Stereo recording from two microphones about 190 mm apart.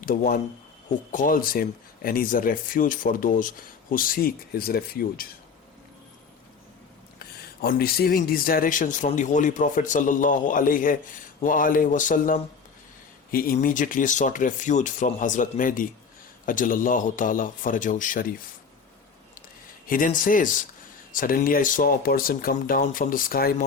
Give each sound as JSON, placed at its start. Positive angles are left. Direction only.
{"t": 0.0, "sound": "speech", "side_deg": 45}
{"t": 7.2, "sound": "speech", "side_deg": 55}
{"t": 19.9, "sound": "speech", "side_deg": 45}